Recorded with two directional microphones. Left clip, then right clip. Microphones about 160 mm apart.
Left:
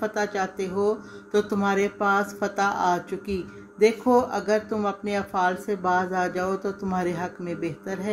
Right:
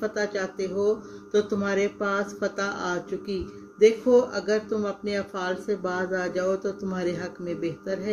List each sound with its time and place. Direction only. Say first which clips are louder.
0.0 s speech: left 2 dB; 25° left (ahead or behind)